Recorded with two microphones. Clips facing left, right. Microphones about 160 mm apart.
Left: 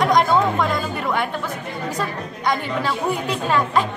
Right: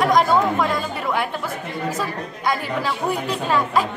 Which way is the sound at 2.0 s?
5° right (ahead or behind).